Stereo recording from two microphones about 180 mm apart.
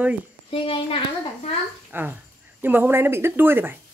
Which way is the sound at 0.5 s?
30° left (ahead or behind).